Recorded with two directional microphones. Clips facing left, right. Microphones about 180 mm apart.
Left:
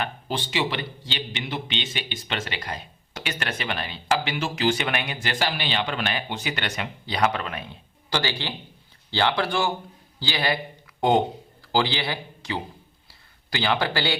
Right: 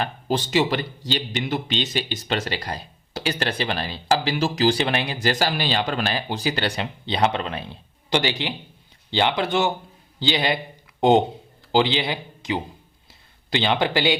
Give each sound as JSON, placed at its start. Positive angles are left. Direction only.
{"t": 0.0, "sound": "a man's voice", "side_deg": -40}
{"t": 8.2, "sound": "a man's voice", "side_deg": -15}
{"t": 11.7, "sound": "a man's voice", "side_deg": -20}